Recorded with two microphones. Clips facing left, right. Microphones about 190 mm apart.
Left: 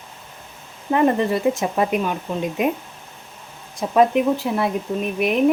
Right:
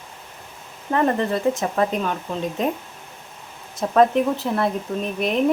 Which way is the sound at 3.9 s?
10° left (ahead or behind).